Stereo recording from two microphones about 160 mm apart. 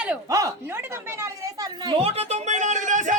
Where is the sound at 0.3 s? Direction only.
20° right (ahead or behind).